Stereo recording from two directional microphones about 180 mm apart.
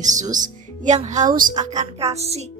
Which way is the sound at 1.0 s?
40° right (ahead or behind).